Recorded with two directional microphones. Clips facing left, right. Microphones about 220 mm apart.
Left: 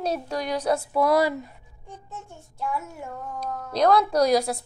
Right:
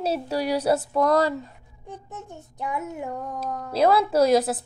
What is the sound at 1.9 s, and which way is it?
Child singing, 15° right (ahead or behind).